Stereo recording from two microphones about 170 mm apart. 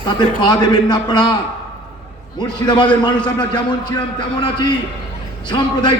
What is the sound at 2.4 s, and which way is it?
A man's voice, 25° left (ahead or behind).